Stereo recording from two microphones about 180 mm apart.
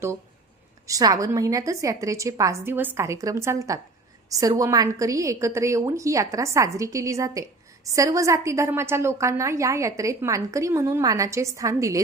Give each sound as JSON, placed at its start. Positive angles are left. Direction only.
{"t": 0.9, "sound": "a woman's voice", "side_deg": -20}